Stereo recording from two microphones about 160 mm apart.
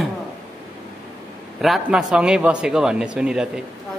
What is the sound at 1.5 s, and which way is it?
A man's voice, centre (ahead or behind).